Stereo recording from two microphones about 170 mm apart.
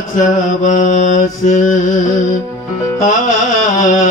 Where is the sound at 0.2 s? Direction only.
45° left (ahead or behind).